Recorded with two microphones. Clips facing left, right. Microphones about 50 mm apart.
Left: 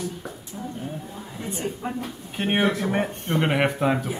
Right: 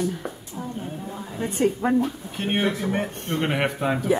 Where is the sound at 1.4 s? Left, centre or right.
Right.